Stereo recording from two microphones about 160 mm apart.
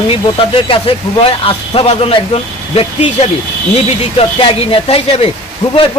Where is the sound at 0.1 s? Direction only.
35° left (ahead or behind).